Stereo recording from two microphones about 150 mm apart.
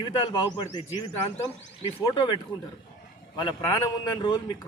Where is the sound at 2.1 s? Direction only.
30° left (ahead or behind).